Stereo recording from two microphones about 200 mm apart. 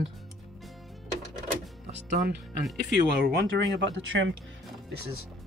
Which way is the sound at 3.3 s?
60° right (ahead or behind).